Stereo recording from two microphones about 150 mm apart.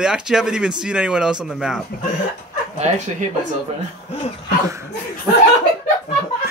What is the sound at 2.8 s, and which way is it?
Speech, 50° right (ahead or behind).